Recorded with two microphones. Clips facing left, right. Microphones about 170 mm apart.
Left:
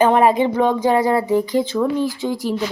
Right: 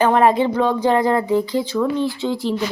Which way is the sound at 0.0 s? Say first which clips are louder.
Left 1 dB; 15° left (ahead or behind).